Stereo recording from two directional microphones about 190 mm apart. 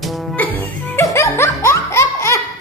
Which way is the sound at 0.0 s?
Centre (ahead or behind).